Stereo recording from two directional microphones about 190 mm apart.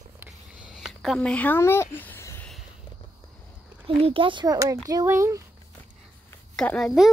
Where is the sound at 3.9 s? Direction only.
30° right (ahead or behind).